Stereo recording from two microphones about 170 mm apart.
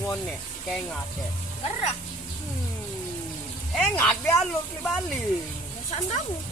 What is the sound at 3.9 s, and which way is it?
Speech, 5° left (ahead or behind).